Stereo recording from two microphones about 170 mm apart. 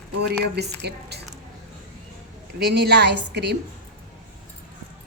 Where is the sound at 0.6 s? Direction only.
75° right (ahead or behind).